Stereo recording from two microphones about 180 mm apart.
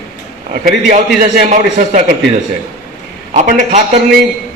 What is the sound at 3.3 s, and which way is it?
Speech, 45° right (ahead or behind).